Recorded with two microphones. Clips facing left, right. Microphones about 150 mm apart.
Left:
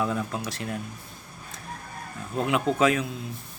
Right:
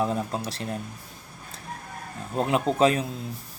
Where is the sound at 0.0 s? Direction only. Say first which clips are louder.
Right 1 dB; 30° right (ahead or behind).